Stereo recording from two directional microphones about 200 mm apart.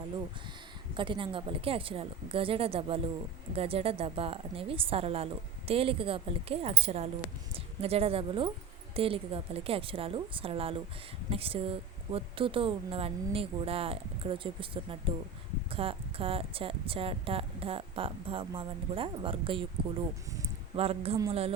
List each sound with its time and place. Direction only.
0.9 s a woman's voice: 25° right (ahead or behind)
20.7 s speech: 30° right (ahead or behind)